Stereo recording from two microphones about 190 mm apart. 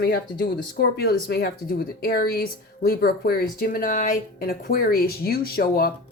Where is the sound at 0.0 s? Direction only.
55° left (ahead or behind).